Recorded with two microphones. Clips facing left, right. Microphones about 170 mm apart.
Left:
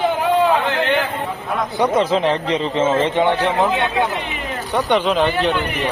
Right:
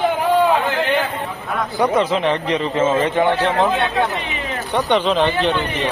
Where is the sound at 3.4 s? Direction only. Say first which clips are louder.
Even; 10° left (ahead or behind).